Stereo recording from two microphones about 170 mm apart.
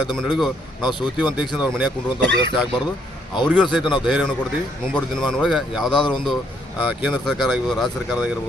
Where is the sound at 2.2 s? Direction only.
90° right.